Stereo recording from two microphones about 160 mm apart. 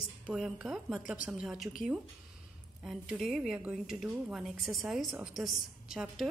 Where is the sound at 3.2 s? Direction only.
Centre (ahead or behind).